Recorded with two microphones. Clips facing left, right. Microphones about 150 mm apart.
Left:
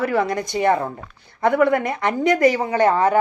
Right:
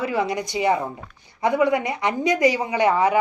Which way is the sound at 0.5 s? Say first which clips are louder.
Left 3 dB; 55° left (ahead or behind).